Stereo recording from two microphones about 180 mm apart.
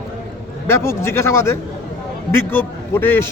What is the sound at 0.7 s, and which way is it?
A man's voice, 15° left (ahead or behind).